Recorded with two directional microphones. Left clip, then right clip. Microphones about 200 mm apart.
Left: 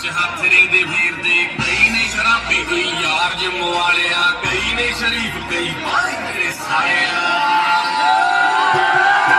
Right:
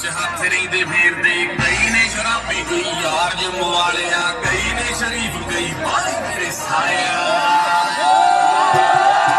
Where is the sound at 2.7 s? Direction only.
10° right (ahead or behind).